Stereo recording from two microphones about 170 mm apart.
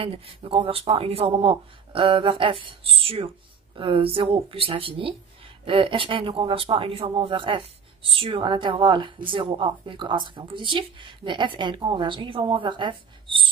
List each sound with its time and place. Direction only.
0.0 s a woman's voice: 30° right (ahead or behind)